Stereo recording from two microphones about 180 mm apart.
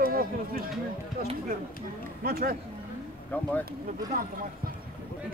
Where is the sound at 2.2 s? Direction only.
55° right (ahead or behind).